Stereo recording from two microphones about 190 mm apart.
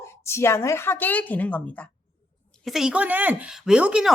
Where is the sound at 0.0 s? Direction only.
15° left (ahead or behind).